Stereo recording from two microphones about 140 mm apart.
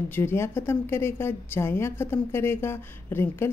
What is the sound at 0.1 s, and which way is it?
A woman's voice, 15° left (ahead or behind).